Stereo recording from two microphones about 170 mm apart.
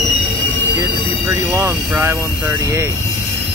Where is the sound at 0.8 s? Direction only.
15° right (ahead or behind).